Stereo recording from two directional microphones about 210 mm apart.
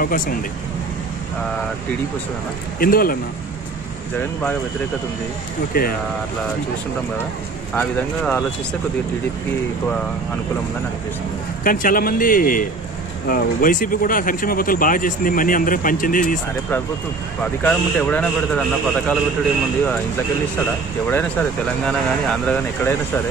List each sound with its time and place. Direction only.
0.0 s speech: 40° left (ahead or behind)
2.8 s a man's voice: 45° left (ahead or behind)
4.2 s speech: 10° left (ahead or behind)
5.7 s a man's voice: 45° left (ahead or behind)
7.7 s a man's voice: 5° left (ahead or behind)
11.6 s speech: 40° left (ahead or behind)
17.4 s a man's voice: 5° left (ahead or behind)
21.1 s speech: 5° left (ahead or behind)